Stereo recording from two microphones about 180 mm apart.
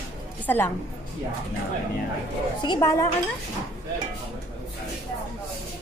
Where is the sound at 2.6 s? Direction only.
20° left (ahead or behind).